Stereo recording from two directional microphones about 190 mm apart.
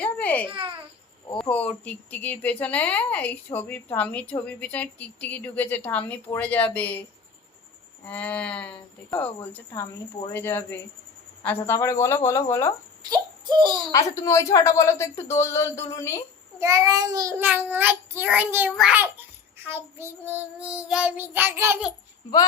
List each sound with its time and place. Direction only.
0.0 s babbling: 5° left (ahead or behind)
0.4 s babbling: 30° right (ahead or behind)
1.4 s speech: 5° left (ahead or behind)
8.0 s speech: 5° left (ahead or behind)
13.0 s a sound: 20° right (ahead or behind)
14.2 s speech: 15° left (ahead or behind)
16.6 s child singing: 15° right (ahead or behind)